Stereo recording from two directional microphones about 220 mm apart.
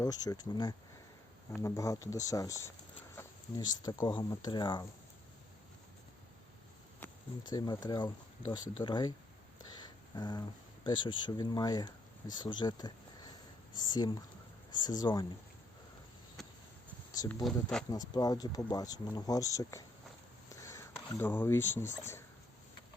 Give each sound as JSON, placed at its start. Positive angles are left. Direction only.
{"t": 0.0, "sound": "speech", "side_deg": 15}
{"t": 7.0, "sound": "speech", "side_deg": 15}
{"t": 9.7, "sound": "a sound", "side_deg": 20}
{"t": 10.8, "sound": "speech", "side_deg": 20}
{"t": 16.4, "sound": "a sound", "side_deg": 0}
{"t": 17.1, "sound": "speech", "side_deg": 15}
{"t": 17.4, "sound": "speech", "side_deg": 0}
{"t": 17.9, "sound": "speech", "side_deg": 15}